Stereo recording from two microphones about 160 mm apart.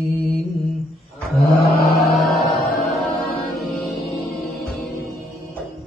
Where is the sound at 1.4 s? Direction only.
75° left (ahead or behind).